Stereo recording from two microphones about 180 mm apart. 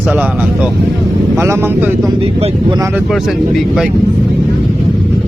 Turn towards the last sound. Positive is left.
turn(degrees=-5)  # may be behind; listen again after turning